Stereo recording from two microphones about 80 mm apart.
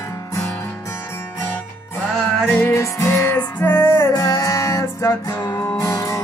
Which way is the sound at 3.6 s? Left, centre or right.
Left.